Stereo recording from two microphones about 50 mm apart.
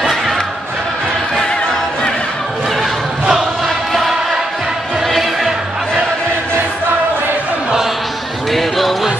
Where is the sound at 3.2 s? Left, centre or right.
Centre.